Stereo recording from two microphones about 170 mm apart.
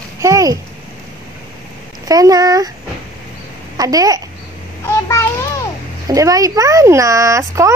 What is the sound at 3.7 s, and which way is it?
Speech, 20° right (ahead or behind).